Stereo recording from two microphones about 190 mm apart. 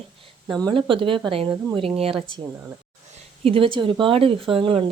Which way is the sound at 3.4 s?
30° right (ahead or behind).